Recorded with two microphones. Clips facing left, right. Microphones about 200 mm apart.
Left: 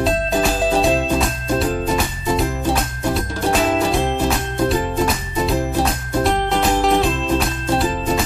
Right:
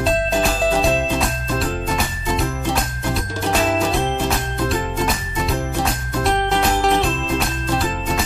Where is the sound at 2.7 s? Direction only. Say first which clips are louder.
Left 3 dB; centre (ahead or behind).